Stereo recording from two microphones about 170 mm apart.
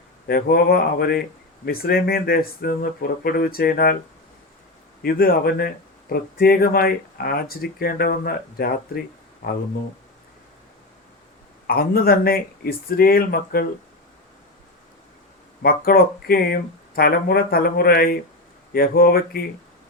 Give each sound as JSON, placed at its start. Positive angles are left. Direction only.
{"t": 0.3, "sound": "speech", "side_deg": 65}
{"t": 5.0, "sound": "speech", "side_deg": 60}
{"t": 11.7, "sound": "speech", "side_deg": 60}
{"t": 15.6, "sound": "speech", "side_deg": 60}